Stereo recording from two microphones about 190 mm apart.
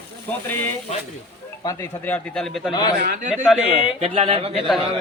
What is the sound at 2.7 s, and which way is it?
Speech, 20° left (ahead or behind).